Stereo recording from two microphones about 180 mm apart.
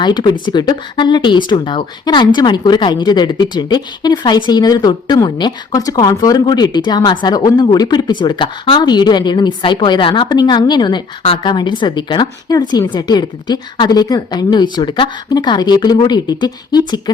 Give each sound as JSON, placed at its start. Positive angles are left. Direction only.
{"t": 0.0, "sound": "speech", "side_deg": 25}